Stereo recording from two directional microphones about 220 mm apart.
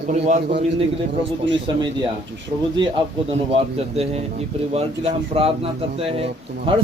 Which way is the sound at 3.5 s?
30° right (ahead or behind).